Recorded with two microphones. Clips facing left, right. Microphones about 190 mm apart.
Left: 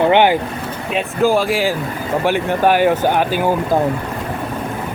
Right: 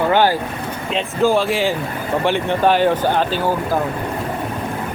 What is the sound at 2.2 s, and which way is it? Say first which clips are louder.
Speech: left 1 dB; 10° left (ahead or behind).